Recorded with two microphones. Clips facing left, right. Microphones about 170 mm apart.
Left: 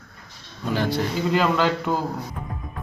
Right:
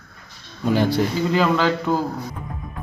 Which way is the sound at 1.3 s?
Centre (ahead or behind).